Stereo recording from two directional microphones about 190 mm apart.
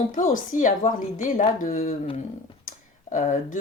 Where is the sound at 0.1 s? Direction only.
45° left (ahead or behind).